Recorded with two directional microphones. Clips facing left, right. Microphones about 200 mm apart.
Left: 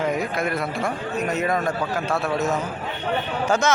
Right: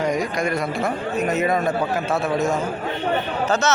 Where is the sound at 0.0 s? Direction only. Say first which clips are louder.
Right 2 dB; 5° left (ahead or behind).